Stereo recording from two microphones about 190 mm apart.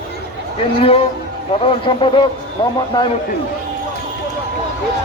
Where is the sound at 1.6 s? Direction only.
25° left (ahead or behind).